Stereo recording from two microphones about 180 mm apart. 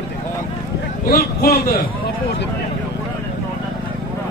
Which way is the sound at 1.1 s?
55° left (ahead or behind).